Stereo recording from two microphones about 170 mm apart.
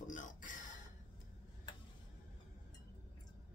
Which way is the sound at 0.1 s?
50° left (ahead or behind).